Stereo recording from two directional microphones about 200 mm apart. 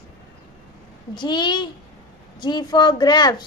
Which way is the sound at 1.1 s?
20° left (ahead or behind).